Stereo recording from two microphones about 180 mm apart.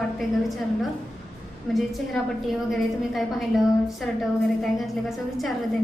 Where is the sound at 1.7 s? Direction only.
Centre (ahead or behind).